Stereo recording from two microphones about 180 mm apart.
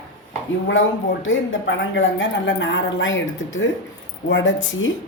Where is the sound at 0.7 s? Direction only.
90° left.